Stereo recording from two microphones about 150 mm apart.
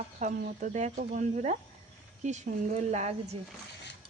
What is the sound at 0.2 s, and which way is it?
Speech, 60° right (ahead or behind).